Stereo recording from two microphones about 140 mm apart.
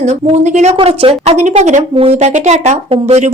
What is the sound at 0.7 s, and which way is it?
A woman's voice, 45° right (ahead or behind).